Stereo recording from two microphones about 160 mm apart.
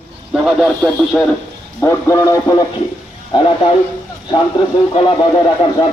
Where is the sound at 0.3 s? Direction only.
Centre (ahead or behind).